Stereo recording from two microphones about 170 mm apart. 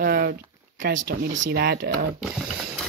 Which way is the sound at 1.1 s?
90° right.